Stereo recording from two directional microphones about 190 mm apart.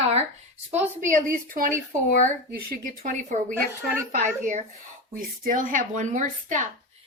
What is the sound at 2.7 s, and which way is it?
Speech, 45° right (ahead or behind).